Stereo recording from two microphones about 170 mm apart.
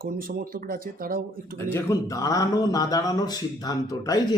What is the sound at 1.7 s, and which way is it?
Speech, 15° left (ahead or behind).